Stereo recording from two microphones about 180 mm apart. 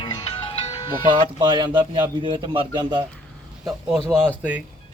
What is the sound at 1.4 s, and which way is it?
A man's voice, 25° right (ahead or behind).